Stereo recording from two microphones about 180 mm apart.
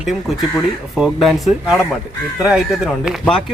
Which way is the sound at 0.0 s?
Centre (ahead or behind).